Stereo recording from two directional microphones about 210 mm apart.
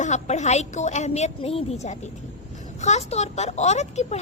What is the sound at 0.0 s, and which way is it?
A woman's voice, 35° left (ahead or behind).